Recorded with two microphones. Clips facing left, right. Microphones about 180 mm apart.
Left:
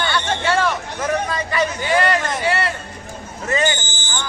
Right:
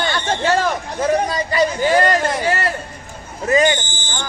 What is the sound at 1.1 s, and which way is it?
Speech, 35° right (ahead or behind).